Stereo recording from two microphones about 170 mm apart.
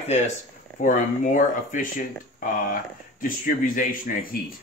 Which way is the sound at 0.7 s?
50° left (ahead or behind).